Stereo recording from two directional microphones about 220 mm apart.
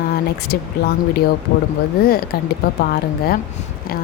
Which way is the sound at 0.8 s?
45° left (ahead or behind).